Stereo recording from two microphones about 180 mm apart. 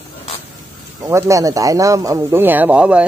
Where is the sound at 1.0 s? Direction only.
15° right (ahead or behind).